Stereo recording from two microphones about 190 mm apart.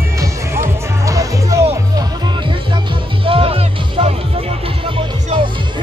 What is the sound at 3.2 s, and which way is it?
Music, 30° right (ahead or behind).